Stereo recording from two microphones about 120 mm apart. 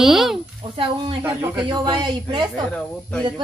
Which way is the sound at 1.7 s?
35° right (ahead or behind).